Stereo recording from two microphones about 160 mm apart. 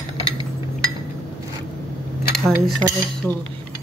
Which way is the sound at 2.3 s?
5° left (ahead or behind).